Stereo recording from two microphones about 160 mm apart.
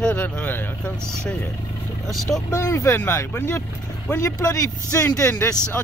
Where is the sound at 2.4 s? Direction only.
20° left (ahead or behind).